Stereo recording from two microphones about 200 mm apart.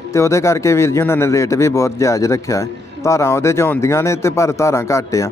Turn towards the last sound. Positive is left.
turn(degrees=15)  # may be behind; listen again after turning